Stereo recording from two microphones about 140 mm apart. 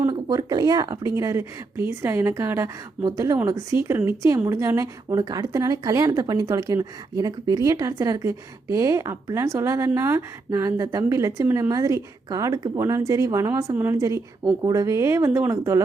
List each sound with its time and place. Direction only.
0.1 s speech: 30° right (ahead or behind)